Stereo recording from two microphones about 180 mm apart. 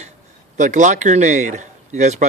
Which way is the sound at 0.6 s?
40° right (ahead or behind).